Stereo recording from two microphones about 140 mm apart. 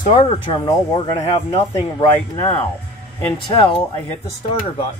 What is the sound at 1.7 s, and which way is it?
Speech, 30° left (ahead or behind).